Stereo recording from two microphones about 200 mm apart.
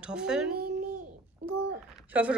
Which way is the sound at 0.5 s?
50° right (ahead or behind).